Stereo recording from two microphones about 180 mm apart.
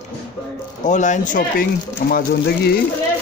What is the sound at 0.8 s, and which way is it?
Speech, 45° left (ahead or behind).